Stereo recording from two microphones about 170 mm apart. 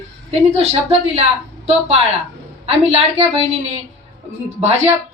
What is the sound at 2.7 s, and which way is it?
Speech, 35° right (ahead or behind).